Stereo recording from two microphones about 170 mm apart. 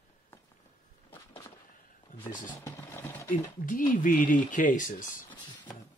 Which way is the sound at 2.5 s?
20° left (ahead or behind).